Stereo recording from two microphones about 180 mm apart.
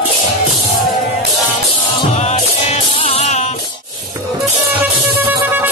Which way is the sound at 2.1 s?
40° left (ahead or behind).